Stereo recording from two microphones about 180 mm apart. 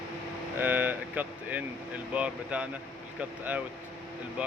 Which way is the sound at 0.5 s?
10° right (ahead or behind).